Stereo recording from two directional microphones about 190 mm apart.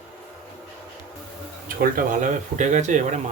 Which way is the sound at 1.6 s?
45° right (ahead or behind).